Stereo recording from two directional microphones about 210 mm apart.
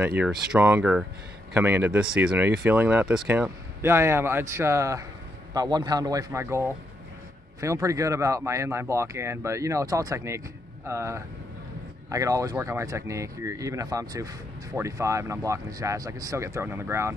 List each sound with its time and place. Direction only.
0.2 s speech: 5° right (ahead or behind)